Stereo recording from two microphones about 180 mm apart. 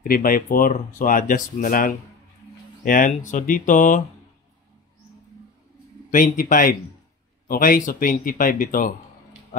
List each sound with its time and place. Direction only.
0.1 s speech: 50° left (ahead or behind)
6.1 s speech: 50° left (ahead or behind)